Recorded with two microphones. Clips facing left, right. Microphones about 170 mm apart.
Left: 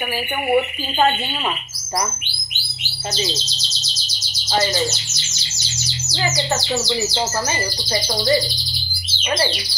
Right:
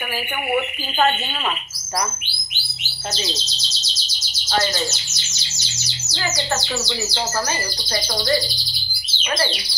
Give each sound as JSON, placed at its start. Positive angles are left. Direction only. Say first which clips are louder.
{"t": 7.9, "sound": "speech", "louder": "left 3 dB", "side_deg": 20}